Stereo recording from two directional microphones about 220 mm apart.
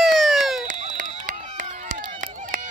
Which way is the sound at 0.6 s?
35° right (ahead or behind).